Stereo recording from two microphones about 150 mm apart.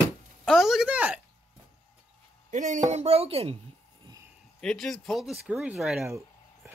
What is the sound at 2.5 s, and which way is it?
Speech, 55° right (ahead or behind).